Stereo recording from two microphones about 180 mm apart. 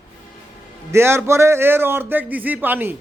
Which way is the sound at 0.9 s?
15° right (ahead or behind).